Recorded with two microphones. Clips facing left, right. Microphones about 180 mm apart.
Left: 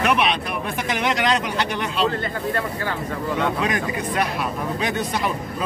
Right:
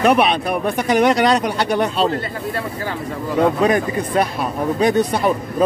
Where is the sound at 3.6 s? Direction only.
35° right (ahead or behind).